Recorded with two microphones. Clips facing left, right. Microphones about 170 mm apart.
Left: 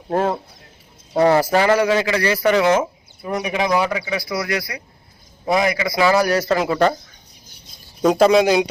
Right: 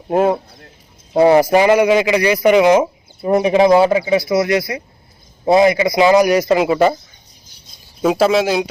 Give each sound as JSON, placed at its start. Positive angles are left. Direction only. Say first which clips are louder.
{"t": 0.1, "sound": "speech", "louder": "right 5 dB", "side_deg": -10}
{"t": 3.2, "sound": "speech", "louder": "right 10 dB", "side_deg": -30}
{"t": 8.0, "sound": "speech", "louder": "left 1 dB", "side_deg": -5}